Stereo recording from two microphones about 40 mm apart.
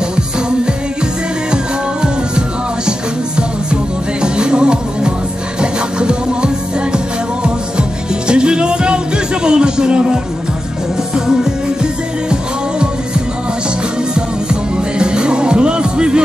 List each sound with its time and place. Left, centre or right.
1.5 s music: right
4.2 s music: right
8.3 s music: right
14.1 s music: right